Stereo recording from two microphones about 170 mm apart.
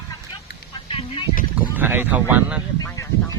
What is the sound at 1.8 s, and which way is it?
Speech, 10° right (ahead or behind).